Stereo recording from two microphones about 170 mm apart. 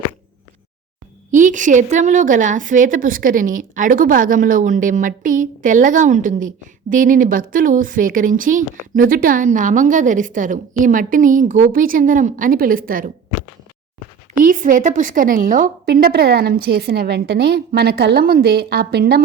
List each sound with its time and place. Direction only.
1.3 s a woman's voice: 50° right (ahead or behind)
14.4 s a woman's voice: 50° right (ahead or behind); by 19.2 s 70° right (ahead or behind)